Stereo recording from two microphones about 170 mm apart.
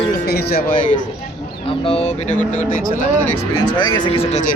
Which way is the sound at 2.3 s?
10° left (ahead or behind).